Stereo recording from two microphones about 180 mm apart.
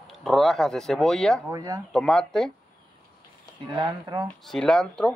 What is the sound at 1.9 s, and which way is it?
Speech, 5° left (ahead or behind).